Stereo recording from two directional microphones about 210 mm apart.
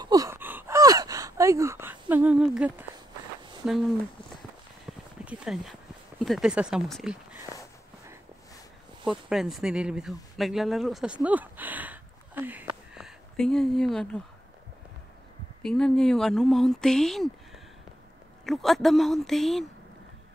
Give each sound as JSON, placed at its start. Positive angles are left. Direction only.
{"t": 0.0, "sound": "gasp", "side_deg": -15}
{"t": 4.9, "sound": "a sound", "side_deg": -10}
{"t": 6.2, "sound": "speech", "side_deg": 0}
{"t": 9.0, "sound": "speech", "side_deg": 0}
{"t": 11.2, "sound": "a sound", "side_deg": -10}
{"t": 12.9, "sound": "speech", "side_deg": 0}
{"t": 15.6, "sound": "speech", "side_deg": 5}
{"t": 18.4, "sound": "speech", "side_deg": 0}